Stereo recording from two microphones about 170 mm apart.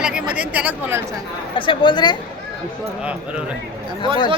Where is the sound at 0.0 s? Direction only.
5° right (ahead or behind).